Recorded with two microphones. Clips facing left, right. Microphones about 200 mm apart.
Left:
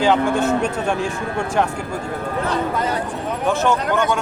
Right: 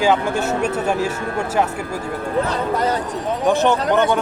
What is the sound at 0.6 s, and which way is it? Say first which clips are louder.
Speech: right 1 dB; 5° right (ahead or behind).